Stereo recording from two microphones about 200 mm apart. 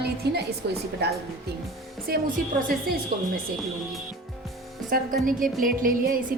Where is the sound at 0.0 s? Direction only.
55° right (ahead or behind).